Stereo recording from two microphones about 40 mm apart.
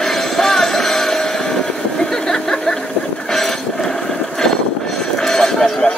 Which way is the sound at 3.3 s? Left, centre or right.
Centre.